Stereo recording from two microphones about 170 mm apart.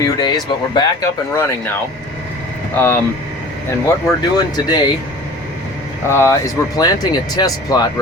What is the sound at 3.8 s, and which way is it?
Speech, 20° left (ahead or behind).